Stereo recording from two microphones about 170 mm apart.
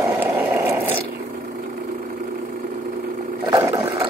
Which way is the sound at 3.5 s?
20° right (ahead or behind).